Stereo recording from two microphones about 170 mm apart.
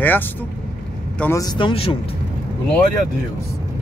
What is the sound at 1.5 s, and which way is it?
Speech, 35° left (ahead or behind).